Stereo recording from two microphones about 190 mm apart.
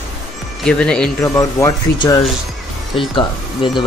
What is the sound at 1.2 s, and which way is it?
Speech, 15° left (ahead or behind).